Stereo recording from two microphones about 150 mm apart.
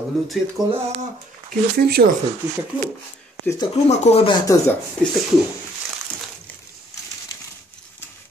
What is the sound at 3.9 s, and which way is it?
Speech, 45° left (ahead or behind).